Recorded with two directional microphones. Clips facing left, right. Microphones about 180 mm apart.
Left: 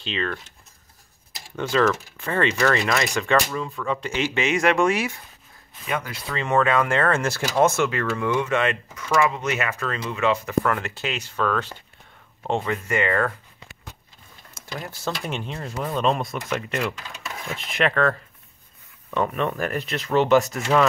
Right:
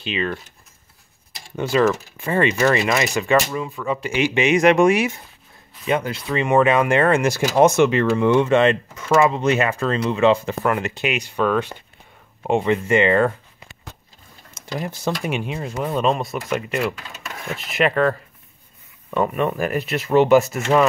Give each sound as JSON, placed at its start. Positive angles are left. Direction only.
{"t": 0.0, "sound": "speech", "side_deg": -10}
{"t": 1.6, "sound": "speech", "side_deg": -10}